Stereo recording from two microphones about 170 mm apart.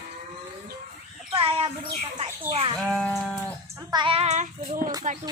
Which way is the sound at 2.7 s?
5° left (ahead or behind).